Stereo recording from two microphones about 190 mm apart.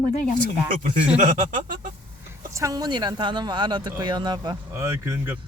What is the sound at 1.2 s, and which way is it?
Speech, 40° right (ahead or behind).